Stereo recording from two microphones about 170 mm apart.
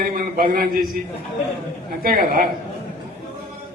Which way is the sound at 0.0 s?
55° right (ahead or behind).